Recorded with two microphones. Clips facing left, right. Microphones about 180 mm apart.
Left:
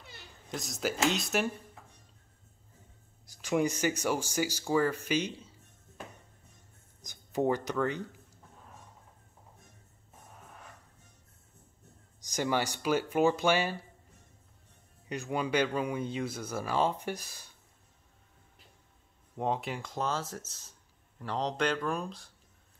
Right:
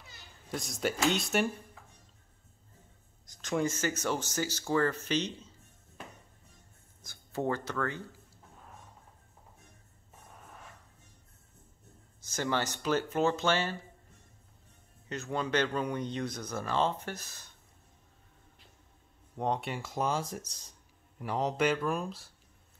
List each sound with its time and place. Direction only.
0.5 s speech: centre (ahead or behind)
3.3 s speech: 10° left (ahead or behind)
7.0 s speech: 15° left (ahead or behind)
12.2 s speech: 15° left (ahead or behind)
15.0 s speech: 15° left (ahead or behind)
19.3 s speech: 5° left (ahead or behind)